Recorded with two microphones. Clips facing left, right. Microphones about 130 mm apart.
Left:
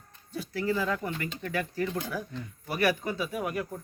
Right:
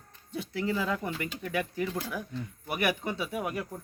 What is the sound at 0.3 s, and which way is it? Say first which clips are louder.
Speech: left 1 dB; 20° right (ahead or behind).